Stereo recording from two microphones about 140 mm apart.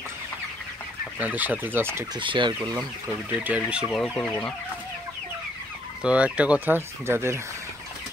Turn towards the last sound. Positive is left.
turn(degrees=-20)  # may be behind; listen again after turning